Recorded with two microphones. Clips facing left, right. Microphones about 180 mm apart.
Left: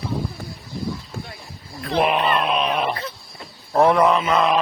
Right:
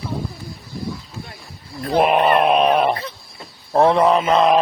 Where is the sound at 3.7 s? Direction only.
25° right (ahead or behind).